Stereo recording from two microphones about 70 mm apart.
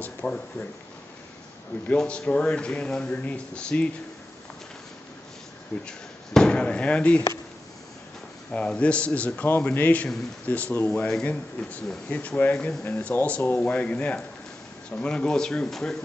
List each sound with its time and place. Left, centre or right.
0.2 s speech: centre
2.0 s speech: centre
5.9 s speech: centre
8.5 s a man's voice: centre